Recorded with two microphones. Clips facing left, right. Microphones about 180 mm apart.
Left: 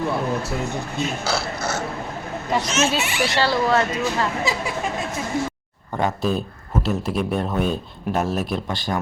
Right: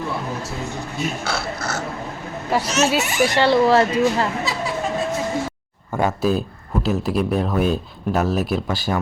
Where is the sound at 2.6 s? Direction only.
35° right (ahead or behind).